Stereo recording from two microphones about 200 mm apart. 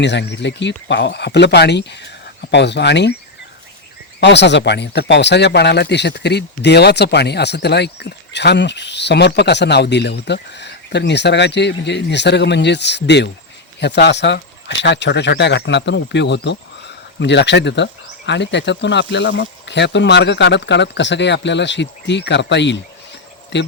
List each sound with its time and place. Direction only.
0.0 s speech: 60° left (ahead or behind)
4.2 s speech: 60° left (ahead or behind)